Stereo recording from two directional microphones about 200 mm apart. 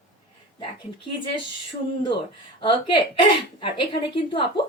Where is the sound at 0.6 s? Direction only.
25° left (ahead or behind).